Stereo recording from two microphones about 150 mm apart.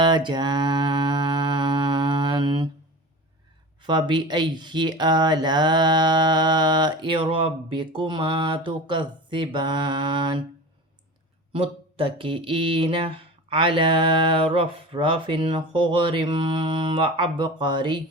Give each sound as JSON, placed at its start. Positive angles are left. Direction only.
{"t": 0.0, "sound": "music", "side_deg": -30}
{"t": 3.8, "sound": "speech", "side_deg": -30}
{"t": 11.5, "sound": "speech", "side_deg": -35}